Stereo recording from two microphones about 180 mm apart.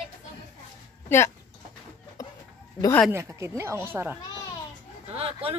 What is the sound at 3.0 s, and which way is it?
Speech, 15° right (ahead or behind).